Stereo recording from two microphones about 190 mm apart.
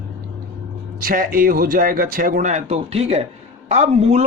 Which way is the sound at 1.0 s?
50° right (ahead or behind).